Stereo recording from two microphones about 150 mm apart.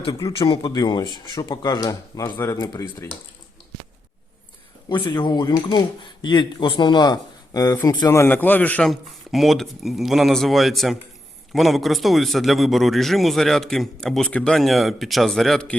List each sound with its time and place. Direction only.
0.3 s speech: 30° left (ahead or behind)
4.9 s speech: 30° left (ahead or behind); by 8.9 s 10° left (ahead or behind)
8.9 s a man's voice: centre (ahead or behind)